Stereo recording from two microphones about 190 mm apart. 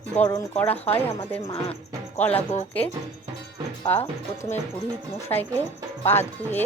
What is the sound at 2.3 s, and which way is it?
Speech, 35° left (ahead or behind).